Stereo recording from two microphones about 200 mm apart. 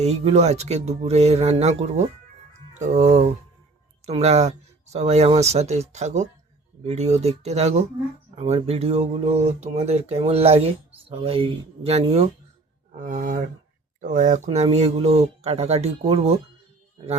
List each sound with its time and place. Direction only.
0.0 s speech: 30° right (ahead or behind)